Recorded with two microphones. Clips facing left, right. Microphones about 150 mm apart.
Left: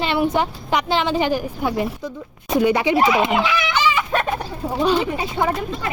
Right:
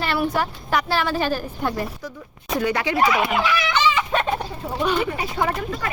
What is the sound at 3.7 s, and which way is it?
Chicken, 5° left (ahead or behind).